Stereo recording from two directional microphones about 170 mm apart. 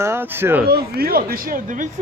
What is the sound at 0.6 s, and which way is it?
Speech, 65° right (ahead or behind).